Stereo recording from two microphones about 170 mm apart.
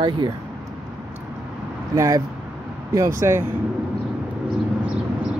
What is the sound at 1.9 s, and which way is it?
Speech, 20° right (ahead or behind).